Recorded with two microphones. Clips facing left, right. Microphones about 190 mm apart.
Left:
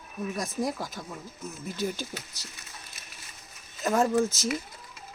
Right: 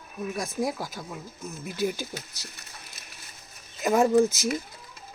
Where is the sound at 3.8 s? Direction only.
15° right (ahead or behind).